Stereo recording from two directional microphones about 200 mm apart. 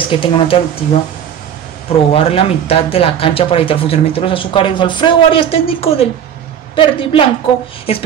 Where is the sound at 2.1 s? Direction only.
30° left (ahead or behind).